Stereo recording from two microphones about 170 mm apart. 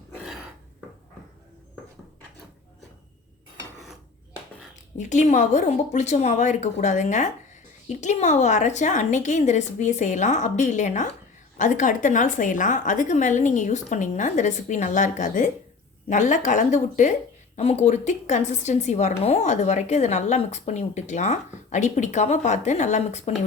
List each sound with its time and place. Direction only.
4.9 s speech: 45° left (ahead or behind)